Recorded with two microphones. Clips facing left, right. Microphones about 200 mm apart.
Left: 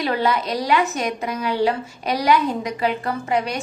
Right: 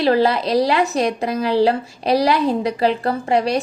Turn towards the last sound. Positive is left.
turn(degrees=-30)  # may be behind; listen again after turning